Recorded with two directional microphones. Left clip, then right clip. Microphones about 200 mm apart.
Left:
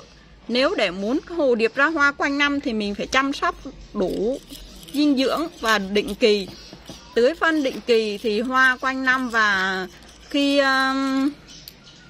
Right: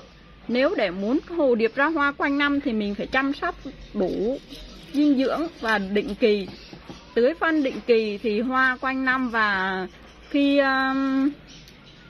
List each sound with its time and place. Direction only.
0.5 s speech: 15° left (ahead or behind)